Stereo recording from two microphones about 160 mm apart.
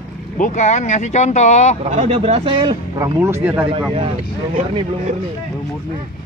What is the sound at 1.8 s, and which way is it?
Speech, 40° right (ahead or behind).